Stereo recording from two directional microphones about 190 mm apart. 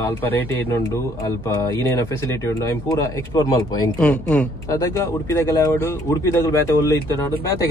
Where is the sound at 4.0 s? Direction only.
5° left (ahead or behind).